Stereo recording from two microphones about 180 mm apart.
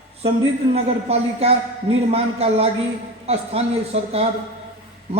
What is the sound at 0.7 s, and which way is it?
A man's voice, 35° right (ahead or behind).